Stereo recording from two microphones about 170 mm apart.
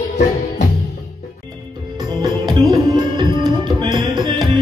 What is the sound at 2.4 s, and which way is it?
Tabla, 25° right (ahead or behind).